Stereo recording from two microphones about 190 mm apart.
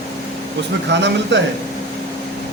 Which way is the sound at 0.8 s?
65° right (ahead or behind).